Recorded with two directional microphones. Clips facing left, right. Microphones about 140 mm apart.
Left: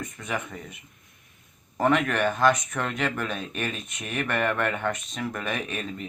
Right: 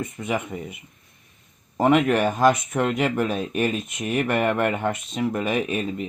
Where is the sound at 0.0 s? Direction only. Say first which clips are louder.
Right 5 dB; 25° right (ahead or behind).